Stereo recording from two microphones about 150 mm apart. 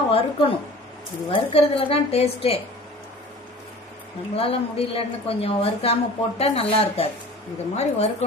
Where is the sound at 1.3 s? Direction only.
40° left (ahead or behind).